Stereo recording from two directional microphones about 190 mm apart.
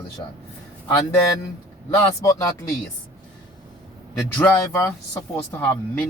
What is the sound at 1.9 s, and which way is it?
Speech, 15° left (ahead or behind).